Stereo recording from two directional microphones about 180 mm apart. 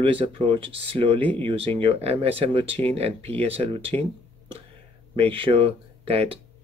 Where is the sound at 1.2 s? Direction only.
10° left (ahead or behind).